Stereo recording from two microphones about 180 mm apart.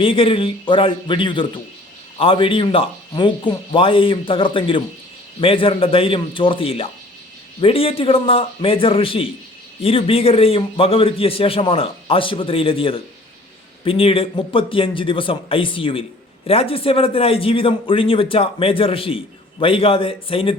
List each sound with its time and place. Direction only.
0.0 s a man's voice: 30° left (ahead or behind)